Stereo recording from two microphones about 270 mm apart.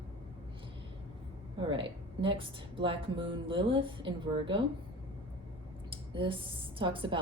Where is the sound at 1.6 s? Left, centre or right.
Centre.